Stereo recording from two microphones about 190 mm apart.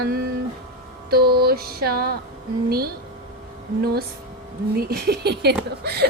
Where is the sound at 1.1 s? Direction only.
55° right (ahead or behind).